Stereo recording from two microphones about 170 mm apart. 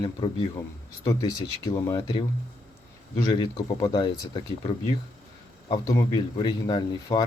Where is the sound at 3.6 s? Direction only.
25° left (ahead or behind).